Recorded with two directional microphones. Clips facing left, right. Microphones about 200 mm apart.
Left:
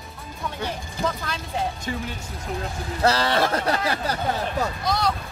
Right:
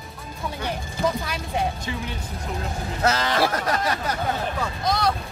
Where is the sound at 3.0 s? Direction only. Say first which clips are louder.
Left 1 dB; 35° left (ahead or behind).